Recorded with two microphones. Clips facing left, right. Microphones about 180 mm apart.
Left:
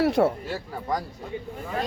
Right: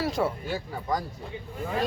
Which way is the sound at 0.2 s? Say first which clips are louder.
Left 5 dB; 55° left (ahead or behind).